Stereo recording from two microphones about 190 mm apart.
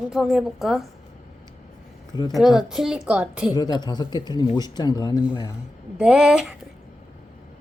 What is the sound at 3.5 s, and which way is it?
Speech, 20° left (ahead or behind).